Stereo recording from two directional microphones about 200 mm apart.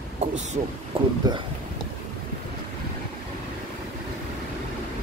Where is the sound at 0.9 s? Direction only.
25° right (ahead or behind).